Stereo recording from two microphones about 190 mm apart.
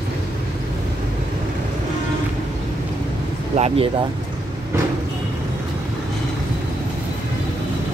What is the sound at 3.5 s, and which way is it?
Speech, 30° right (ahead or behind).